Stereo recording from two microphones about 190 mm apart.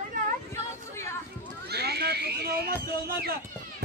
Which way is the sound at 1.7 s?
60° right (ahead or behind).